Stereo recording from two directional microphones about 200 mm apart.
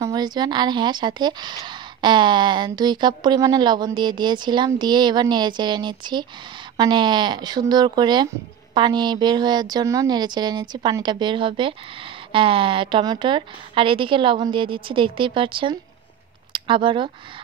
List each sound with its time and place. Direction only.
0.0 s a woman's voice: 20° right (ahead or behind)